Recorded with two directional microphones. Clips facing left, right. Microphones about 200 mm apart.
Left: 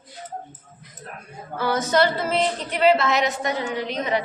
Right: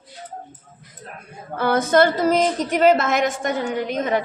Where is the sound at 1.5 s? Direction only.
55° right (ahead or behind).